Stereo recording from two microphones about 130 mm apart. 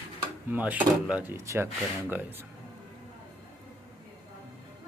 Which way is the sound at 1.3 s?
20° right (ahead or behind).